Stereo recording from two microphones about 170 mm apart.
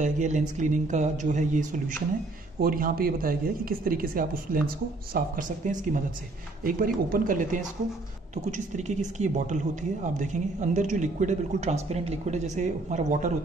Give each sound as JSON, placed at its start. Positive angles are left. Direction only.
{"t": 0.0, "sound": "a woman's voice", "side_deg": -45}